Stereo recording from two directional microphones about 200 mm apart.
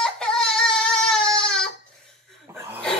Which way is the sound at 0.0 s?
5° left (ahead or behind).